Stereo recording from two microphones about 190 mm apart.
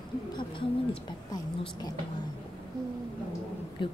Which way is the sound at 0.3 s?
25° left (ahead or behind).